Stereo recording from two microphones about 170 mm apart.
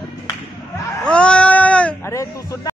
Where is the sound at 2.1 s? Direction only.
20° left (ahead or behind).